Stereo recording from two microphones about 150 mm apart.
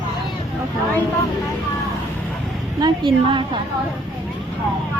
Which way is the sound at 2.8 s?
30° right (ahead or behind).